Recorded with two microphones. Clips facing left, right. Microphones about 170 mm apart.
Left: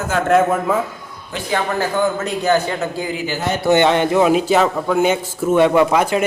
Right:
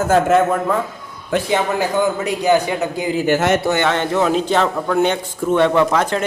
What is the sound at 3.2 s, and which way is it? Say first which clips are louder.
Speech: right 8 dB; 75° right (ahead or behind).